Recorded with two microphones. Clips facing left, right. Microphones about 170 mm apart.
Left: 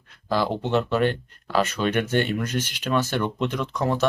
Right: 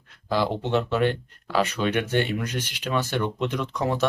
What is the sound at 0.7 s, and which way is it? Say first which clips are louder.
Speech: left 2 dB; 10° right (ahead or behind).